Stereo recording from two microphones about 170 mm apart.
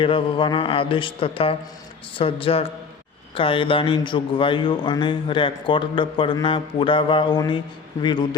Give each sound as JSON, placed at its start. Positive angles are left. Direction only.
{"t": 0.0, "sound": "mantra", "side_deg": 30}
{"t": 3.3, "sound": "a man's voice", "side_deg": 30}